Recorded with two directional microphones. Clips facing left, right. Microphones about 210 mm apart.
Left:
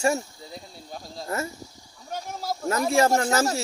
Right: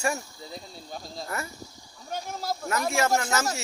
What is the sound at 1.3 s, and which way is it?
Speech, 25° left (ahead or behind).